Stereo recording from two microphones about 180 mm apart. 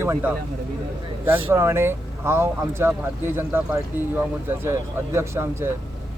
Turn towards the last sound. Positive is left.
turn(degrees=-15)  # may be behind; listen again after turning